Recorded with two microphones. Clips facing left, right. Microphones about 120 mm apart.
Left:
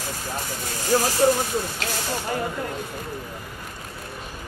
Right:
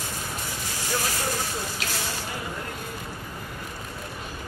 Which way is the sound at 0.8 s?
40° left (ahead or behind).